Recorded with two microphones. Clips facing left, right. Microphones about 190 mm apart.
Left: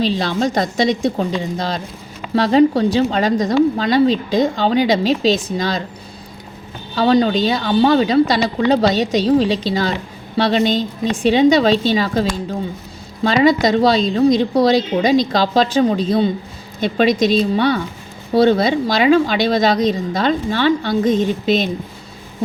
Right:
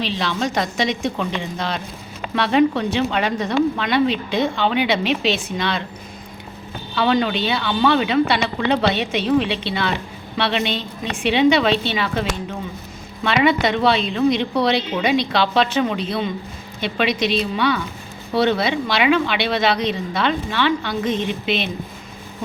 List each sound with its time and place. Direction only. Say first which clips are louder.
0.0 s a woman's voice: left 5 dB; 40° left (ahead or behind)
6.9 s a woman's voice: left 5 dB; 35° left (ahead or behind)